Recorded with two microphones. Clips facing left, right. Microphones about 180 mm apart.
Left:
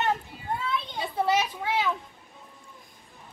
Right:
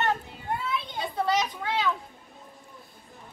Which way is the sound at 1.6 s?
20° left (ahead or behind).